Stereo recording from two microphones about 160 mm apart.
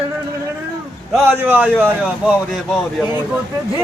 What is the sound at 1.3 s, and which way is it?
A man's voice, 10° right (ahead or behind).